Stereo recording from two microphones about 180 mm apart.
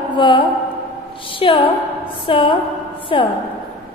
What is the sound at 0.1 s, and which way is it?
A woman's voice, 25° left (ahead or behind).